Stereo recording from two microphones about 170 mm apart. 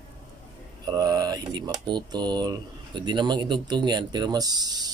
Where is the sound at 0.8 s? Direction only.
25° right (ahead or behind).